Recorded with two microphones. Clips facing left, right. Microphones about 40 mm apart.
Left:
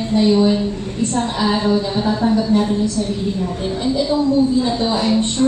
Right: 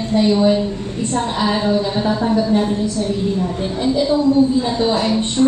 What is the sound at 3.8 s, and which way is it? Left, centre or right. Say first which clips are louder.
Speech: right 2 dB; centre.